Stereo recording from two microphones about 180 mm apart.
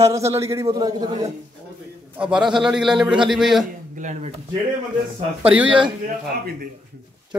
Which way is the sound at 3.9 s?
40° right (ahead or behind).